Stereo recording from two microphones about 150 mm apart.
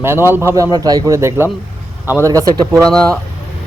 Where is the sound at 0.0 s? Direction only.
15° right (ahead or behind).